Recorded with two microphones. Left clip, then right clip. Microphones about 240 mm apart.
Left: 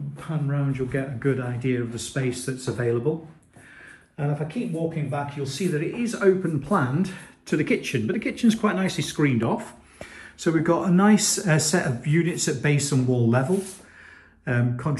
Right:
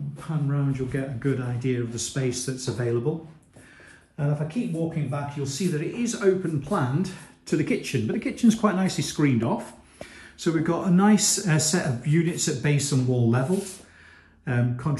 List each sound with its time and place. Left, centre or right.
0.2 s speech: centre
4.2 s speech: centre